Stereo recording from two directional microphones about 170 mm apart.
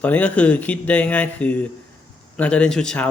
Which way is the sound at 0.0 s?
10° left (ahead or behind).